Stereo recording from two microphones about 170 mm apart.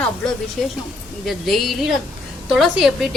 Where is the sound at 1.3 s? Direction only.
Centre (ahead or behind).